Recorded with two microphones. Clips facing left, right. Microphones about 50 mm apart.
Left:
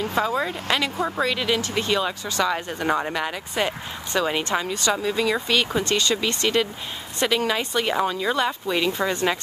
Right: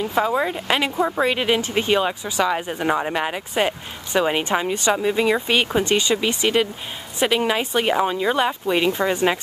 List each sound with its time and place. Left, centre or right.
0.1 s speech: centre